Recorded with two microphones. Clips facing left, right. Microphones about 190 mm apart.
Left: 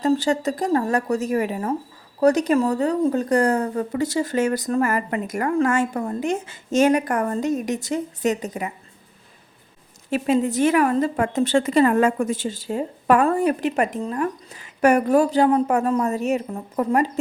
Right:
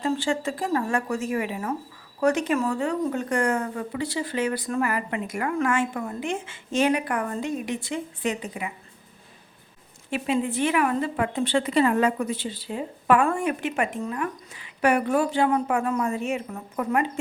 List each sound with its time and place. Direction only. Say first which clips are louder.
0.0 s a woman's voice: left 5 dB; 40° left (ahead or behind)
10.1 s a woman's voice: left 5 dB; 40° left (ahead or behind)